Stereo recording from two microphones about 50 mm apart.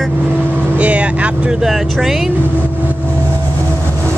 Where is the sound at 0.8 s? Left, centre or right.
Right.